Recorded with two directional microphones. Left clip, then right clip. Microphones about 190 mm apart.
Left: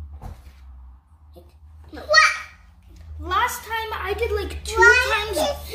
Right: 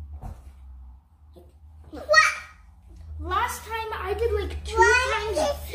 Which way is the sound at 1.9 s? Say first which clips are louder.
Left 3 dB; 15° right (ahead or behind).